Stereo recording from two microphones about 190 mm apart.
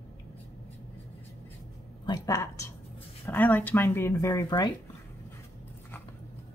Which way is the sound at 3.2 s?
10° left (ahead or behind).